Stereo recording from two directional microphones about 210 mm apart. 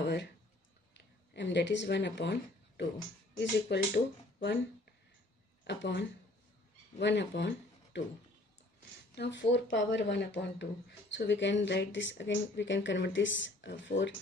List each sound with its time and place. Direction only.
0.0 s a sound: 55° left (ahead or behind)
0.9 s speech: 55° left (ahead or behind)
3.3 s speech: 55° left (ahead or behind)
5.6 s speech: 60° left (ahead or behind)
9.1 s speech: 55° left (ahead or behind)